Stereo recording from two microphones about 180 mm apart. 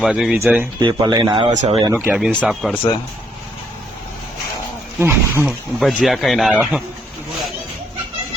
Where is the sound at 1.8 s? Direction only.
10° right (ahead or behind).